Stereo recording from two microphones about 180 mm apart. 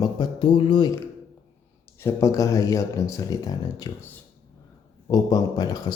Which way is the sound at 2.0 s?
15° left (ahead or behind).